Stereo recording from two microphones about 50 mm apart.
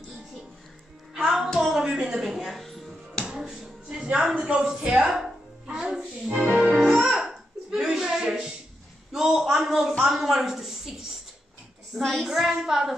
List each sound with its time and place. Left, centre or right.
1.1 s music: centre
3.3 s music: centre
4.6 s speech: centre
4.8 s music: centre
9.1 s a sound: centre
10.0 s a woman's voice: centre